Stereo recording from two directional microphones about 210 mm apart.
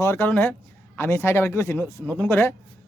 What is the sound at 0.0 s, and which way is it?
A man's voice, 10° left (ahead or behind).